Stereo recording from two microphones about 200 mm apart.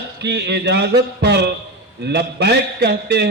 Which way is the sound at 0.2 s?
55° right (ahead or behind).